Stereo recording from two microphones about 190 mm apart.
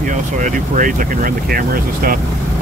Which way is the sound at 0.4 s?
45° right (ahead or behind).